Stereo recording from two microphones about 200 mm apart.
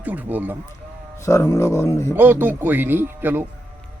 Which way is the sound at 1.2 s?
15° left (ahead or behind).